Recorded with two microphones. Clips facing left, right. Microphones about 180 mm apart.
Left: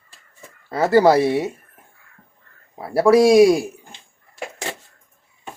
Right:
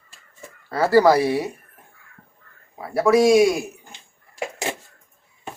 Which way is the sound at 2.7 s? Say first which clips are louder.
Left 3 dB; 30° left (ahead or behind).